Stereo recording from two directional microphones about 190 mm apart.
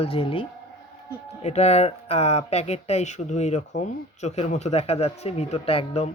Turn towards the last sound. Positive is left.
turn(degrees=30)  # may be behind; listen again after turning